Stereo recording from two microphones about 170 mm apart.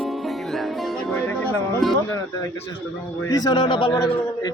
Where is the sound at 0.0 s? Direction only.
Centre (ahead or behind).